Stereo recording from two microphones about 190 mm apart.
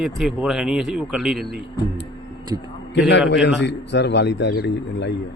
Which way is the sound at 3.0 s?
65° left (ahead or behind).